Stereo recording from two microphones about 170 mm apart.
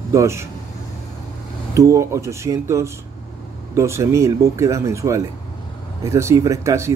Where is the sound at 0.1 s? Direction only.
15° right (ahead or behind).